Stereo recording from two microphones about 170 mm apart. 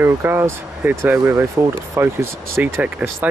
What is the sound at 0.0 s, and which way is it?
Speech, 15° right (ahead or behind).